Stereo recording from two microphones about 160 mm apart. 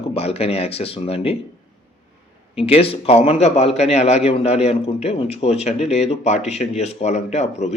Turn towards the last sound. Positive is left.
turn(degrees=45)  # may be behind; listen again after turning